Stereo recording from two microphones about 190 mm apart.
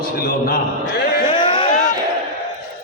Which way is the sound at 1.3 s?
25° left (ahead or behind).